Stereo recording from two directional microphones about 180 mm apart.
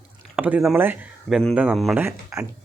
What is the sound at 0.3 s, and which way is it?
Speech, 5° right (ahead or behind).